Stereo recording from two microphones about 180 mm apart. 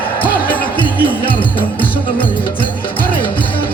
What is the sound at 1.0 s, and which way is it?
Speech, 30° left (ahead or behind).